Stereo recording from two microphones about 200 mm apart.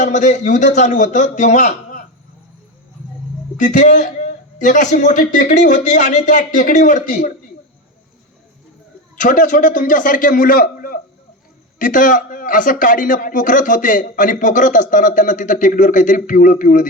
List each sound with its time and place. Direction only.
0.0 s speech: 40° left (ahead or behind)
3.6 s speech: 40° left (ahead or behind)
9.1 s a man's voice: 40° left (ahead or behind)